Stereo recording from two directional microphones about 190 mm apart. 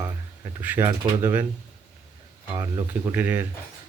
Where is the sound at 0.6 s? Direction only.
10° right (ahead or behind).